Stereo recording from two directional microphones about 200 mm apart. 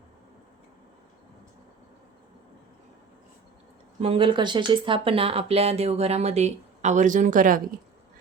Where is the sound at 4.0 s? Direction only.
25° right (ahead or behind).